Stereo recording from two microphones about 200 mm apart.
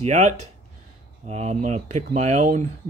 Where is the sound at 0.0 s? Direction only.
35° right (ahead or behind).